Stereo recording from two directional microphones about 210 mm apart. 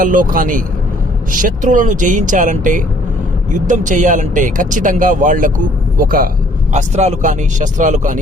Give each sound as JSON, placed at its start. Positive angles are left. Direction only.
{"t": 0.0, "sound": "speech", "side_deg": -40}